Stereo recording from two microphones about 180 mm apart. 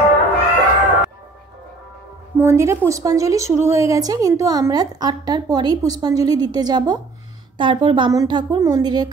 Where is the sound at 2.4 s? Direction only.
15° right (ahead or behind).